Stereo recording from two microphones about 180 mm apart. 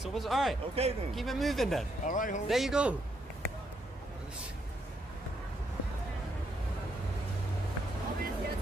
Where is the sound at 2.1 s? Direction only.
45° left (ahead or behind).